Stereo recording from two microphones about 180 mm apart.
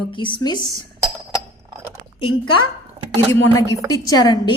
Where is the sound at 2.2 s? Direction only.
30° left (ahead or behind).